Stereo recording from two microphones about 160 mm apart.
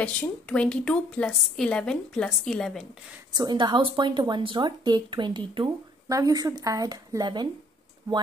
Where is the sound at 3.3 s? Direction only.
25° right (ahead or behind).